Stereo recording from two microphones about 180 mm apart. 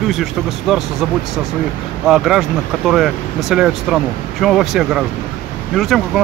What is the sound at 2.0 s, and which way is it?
Speech, 5° right (ahead or behind).